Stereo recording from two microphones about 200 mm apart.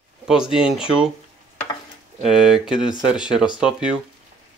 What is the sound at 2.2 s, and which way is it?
Speech, centre (ahead or behind).